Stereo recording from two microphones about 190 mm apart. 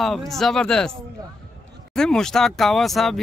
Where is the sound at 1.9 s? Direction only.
5° left (ahead or behind).